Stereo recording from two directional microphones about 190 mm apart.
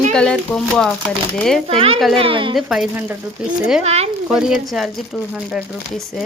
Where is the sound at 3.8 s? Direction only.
35° right (ahead or behind).